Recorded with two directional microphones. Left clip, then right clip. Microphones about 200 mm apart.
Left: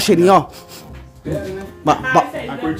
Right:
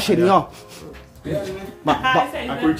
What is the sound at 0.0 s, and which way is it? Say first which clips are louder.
Speech: left 4 dB; 30° left (ahead or behind).